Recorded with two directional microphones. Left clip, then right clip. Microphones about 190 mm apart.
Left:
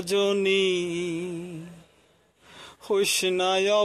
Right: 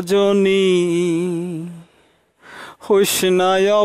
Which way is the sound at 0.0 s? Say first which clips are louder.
Right 8 dB; 50° right (ahead or behind).